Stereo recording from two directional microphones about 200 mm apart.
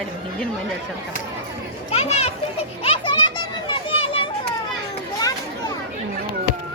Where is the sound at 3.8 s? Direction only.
25° left (ahead or behind).